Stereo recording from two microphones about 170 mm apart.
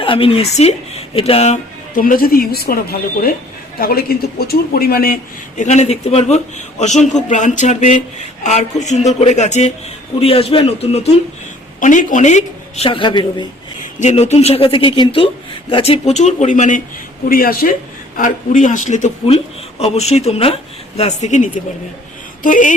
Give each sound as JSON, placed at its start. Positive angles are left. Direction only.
{"t": 0.0, "sound": "speech", "side_deg": 30}
{"t": 2.0, "sound": "speech", "side_deg": 55}
{"t": 5.5, "sound": "a man's voice", "side_deg": 40}
{"t": 11.8, "sound": "speech", "side_deg": 45}
{"t": 14.0, "sound": "speech", "side_deg": 40}
{"t": 18.2, "sound": "a man's voice", "side_deg": 50}